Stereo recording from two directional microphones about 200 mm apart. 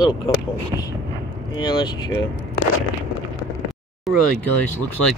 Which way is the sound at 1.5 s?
20° left (ahead or behind).